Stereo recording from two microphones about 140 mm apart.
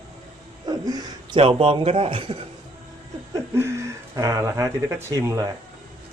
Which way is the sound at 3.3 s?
20° right (ahead or behind).